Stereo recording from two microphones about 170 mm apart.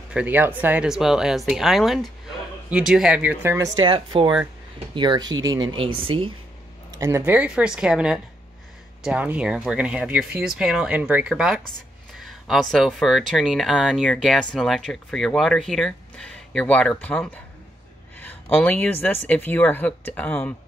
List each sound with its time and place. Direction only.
0.1 s speech: 10° right (ahead or behind)
3.7 s speech: 30° right (ahead or behind)
6.9 s speech: 20° right (ahead or behind); by 20.5 s 10° left (ahead or behind)